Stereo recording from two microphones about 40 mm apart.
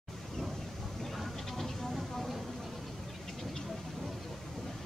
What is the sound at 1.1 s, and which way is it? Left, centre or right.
Vehicle, centre.